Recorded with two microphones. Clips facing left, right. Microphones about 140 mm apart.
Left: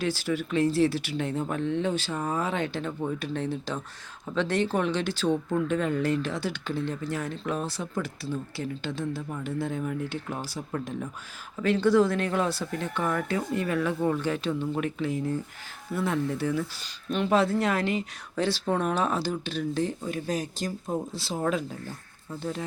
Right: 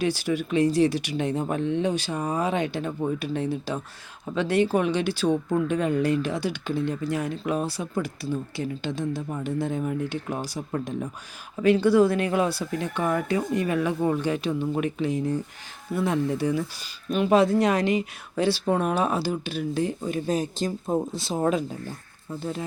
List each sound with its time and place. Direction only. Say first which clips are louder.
0.0 s speech: right 3 dB; 15° right (ahead or behind)